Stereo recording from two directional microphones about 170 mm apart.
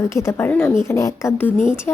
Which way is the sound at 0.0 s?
15° left (ahead or behind).